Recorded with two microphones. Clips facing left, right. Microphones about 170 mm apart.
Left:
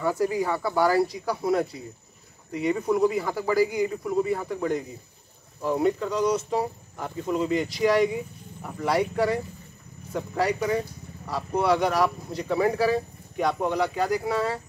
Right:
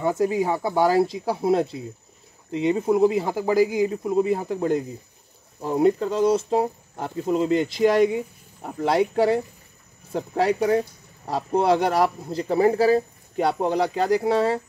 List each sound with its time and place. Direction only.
0.0 s speech: 20° right (ahead or behind)
8.6 s speech: 30° right (ahead or behind)